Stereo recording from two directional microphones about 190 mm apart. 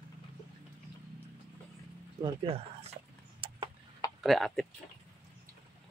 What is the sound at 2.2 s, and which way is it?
Door, 30° right (ahead or behind).